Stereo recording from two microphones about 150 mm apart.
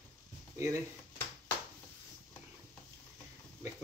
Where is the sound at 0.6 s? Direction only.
20° right (ahead or behind).